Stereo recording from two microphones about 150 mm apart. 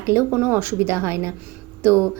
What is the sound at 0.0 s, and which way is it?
A woman's voice, 15° right (ahead or behind).